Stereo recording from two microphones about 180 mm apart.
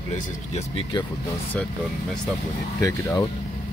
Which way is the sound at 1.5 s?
5° left (ahead or behind).